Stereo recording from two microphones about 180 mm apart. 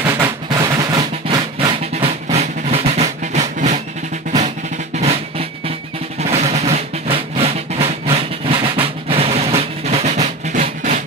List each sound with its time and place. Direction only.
0.0 s drum: 20° right (ahead or behind); by 3.8 s 40° right (ahead or behind)
4.9 s drum: 35° right (ahead or behind)